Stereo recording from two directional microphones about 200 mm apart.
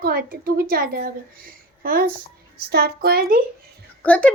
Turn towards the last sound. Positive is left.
turn(degrees=5)  # may be behind; listen again after turning